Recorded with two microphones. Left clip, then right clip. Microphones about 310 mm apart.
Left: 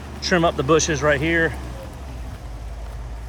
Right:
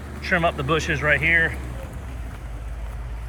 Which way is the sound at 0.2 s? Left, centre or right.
Centre.